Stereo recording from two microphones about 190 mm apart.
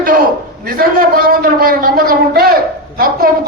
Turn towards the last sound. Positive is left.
turn(degrees=-50)  # may be behind; listen again after turning